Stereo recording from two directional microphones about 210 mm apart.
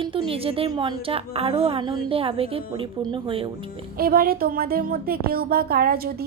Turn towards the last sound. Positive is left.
turn(degrees=-45)  # may be behind; listen again after turning